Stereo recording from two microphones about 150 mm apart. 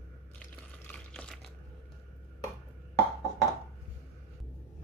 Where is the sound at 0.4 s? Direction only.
10° left (ahead or behind).